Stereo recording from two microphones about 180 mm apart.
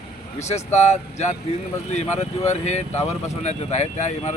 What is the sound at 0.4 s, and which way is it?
Speech, 40° left (ahead or behind).